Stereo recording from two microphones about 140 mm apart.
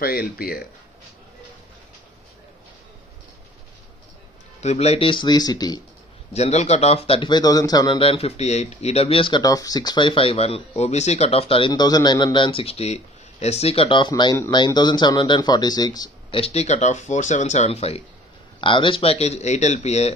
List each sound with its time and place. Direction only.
0.0 s speech: 90° left
4.6 s speech: 50° left (ahead or behind); by 5.8 s 30° left (ahead or behind)
6.3 s speech: 50° left (ahead or behind); by 8.0 s 30° left (ahead or behind)
8.0 s speech: 45° left (ahead or behind); by 16.1 s 25° left (ahead or behind)
16.3 s speech: 45° left (ahead or behind)